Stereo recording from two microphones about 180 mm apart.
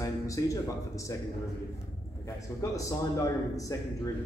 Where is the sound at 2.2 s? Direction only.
15° left (ahead or behind).